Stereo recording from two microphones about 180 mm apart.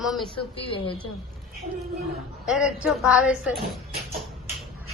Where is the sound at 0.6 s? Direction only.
30° left (ahead or behind).